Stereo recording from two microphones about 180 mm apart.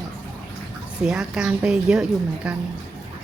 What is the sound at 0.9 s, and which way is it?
A woman's voice, 5° right (ahead or behind).